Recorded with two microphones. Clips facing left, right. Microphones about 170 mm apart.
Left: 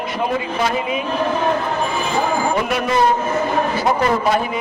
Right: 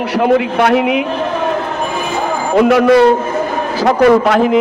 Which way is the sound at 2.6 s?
70° right (ahead or behind).